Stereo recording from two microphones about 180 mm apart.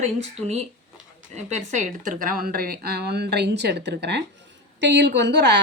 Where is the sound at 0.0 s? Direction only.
40° right (ahead or behind).